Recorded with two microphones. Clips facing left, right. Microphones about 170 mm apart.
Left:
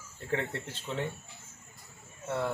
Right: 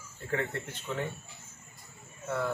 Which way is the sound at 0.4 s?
25° left (ahead or behind).